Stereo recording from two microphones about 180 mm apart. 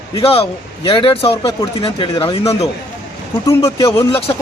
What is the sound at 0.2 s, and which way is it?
Speech, 30° left (ahead or behind).